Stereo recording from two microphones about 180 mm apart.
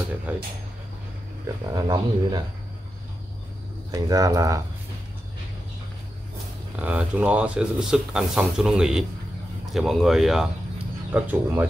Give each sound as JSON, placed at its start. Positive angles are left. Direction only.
{"t": 0.3, "sound": "speech", "side_deg": -10}
{"t": 1.7, "sound": "speech", "side_deg": -20}
{"t": 3.9, "sound": "speech", "side_deg": -20}
{"t": 6.8, "sound": "speech", "side_deg": -10}